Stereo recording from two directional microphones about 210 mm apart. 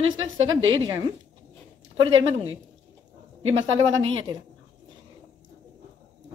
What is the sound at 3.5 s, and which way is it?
Speech, 70° right (ahead or behind).